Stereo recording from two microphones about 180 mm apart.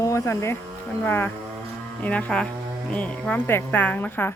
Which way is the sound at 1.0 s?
10° left (ahead or behind).